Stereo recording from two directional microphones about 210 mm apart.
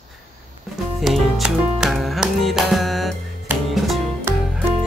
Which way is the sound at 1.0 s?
Centre (ahead or behind).